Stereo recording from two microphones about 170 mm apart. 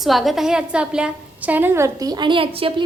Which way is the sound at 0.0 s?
Centre (ahead or behind).